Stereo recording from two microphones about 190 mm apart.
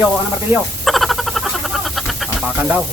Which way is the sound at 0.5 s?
Centre (ahead or behind).